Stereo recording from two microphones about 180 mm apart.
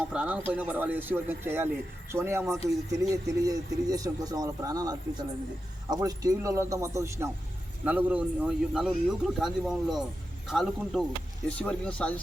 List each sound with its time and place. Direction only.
0.0 s a man's voice: 5° right (ahead or behind)